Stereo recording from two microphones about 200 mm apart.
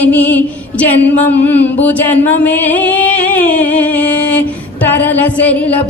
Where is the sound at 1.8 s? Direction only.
10° left (ahead or behind).